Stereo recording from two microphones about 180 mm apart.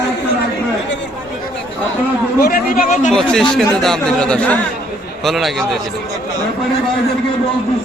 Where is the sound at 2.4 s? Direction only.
50° left (ahead or behind).